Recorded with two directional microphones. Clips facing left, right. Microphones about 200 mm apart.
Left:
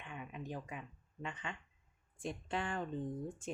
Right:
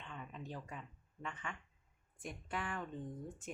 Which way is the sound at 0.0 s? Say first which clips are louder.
Left 2 dB; 15° left (ahead or behind).